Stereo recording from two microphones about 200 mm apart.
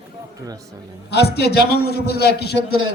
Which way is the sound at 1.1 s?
55° left (ahead or behind).